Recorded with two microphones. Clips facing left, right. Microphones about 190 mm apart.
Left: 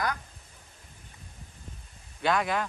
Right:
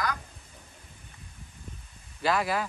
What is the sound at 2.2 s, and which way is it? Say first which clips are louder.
Speech: even; 5° right (ahead or behind).